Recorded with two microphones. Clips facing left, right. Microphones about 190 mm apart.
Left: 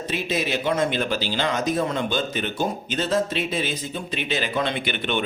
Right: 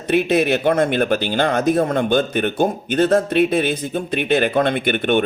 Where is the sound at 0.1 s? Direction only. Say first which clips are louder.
Right 10 dB; 60° right (ahead or behind).